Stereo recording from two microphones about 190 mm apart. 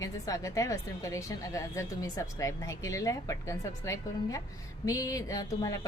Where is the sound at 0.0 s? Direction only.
15° left (ahead or behind).